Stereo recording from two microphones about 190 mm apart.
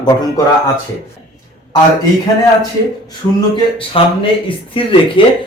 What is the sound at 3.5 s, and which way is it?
Speech, 30° left (ahead or behind).